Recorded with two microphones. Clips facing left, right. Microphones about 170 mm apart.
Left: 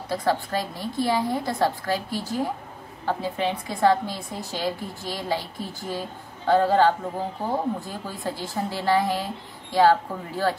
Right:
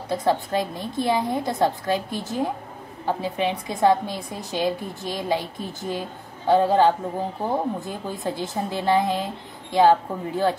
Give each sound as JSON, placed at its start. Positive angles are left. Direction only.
{"t": 0.1, "sound": "a woman's voice", "side_deg": -20}